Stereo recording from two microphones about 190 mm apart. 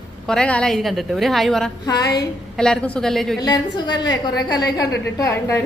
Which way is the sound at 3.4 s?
20° left (ahead or behind).